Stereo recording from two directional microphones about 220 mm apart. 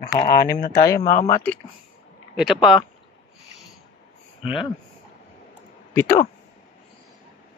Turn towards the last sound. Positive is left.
turn(degrees=10)  # may be behind; listen again after turning